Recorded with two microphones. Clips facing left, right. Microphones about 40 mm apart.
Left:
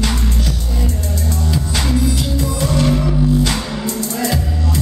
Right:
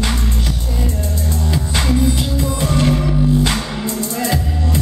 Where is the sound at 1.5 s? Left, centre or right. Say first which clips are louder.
Right 1 dB; centre.